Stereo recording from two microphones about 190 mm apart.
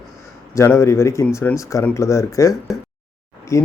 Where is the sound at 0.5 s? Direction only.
15° left (ahead or behind).